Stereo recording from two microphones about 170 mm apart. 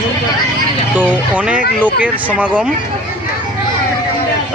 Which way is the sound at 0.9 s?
10° right (ahead or behind).